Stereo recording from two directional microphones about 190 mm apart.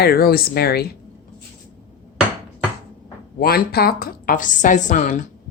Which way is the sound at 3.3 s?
55° left (ahead or behind).